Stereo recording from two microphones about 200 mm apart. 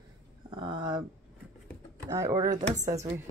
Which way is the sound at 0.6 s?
20° right (ahead or behind).